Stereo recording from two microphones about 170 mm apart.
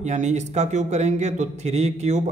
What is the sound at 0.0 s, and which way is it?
Speech, 45° right (ahead or behind).